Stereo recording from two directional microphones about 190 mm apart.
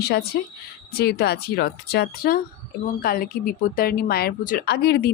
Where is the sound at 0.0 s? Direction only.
55° left (ahead or behind).